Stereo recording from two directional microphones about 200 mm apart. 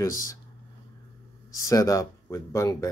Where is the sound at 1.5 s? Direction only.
15° left (ahead or behind).